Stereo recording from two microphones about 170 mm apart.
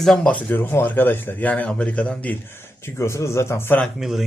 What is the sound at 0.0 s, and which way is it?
Speech, 5° left (ahead or behind).